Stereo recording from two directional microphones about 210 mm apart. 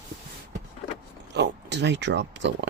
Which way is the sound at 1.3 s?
55° right (ahead or behind).